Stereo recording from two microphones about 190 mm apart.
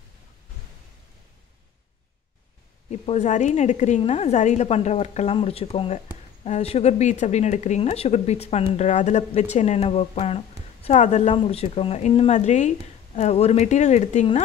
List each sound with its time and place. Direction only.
2.9 s speech: 35° left (ahead or behind)